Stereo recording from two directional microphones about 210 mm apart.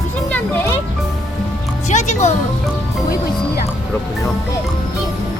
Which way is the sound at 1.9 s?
35° left (ahead or behind).